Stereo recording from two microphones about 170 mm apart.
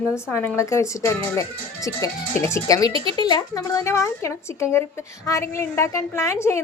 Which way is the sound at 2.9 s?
30° right (ahead or behind).